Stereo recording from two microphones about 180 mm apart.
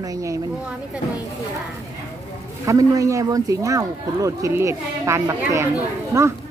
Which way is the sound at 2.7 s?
20° right (ahead or behind).